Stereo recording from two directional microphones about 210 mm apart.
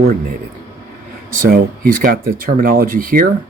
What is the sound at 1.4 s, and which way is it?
Speech, 45° right (ahead or behind).